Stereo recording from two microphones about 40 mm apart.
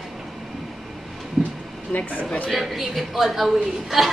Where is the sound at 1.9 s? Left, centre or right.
Left.